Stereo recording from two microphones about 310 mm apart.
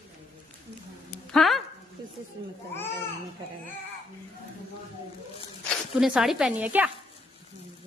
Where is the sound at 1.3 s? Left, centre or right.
Centre.